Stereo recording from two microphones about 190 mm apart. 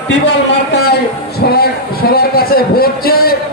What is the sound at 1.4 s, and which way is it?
A man's voice, 55° left (ahead or behind).